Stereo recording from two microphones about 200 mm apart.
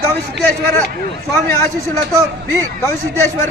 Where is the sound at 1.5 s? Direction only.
15° left (ahead or behind).